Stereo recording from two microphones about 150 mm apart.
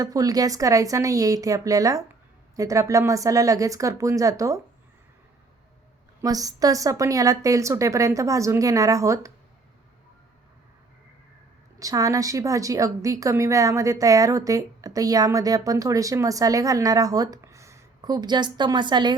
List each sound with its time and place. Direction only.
0.0 s a woman's voice: 25° right (ahead or behind)
6.2 s a woman's voice: 25° right (ahead or behind)
11.8 s a woman's voice: 20° right (ahead or behind)